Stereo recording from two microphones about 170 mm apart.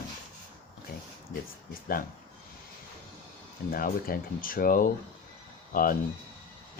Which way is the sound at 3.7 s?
55° left (ahead or behind).